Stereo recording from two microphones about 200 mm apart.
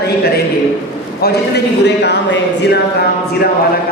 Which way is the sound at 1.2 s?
55° left (ahead or behind).